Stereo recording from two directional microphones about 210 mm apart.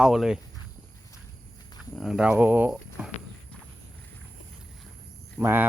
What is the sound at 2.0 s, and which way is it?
Speech, centre (ahead or behind).